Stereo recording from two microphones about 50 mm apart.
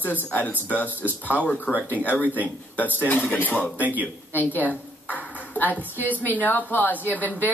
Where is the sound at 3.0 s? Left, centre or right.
Left.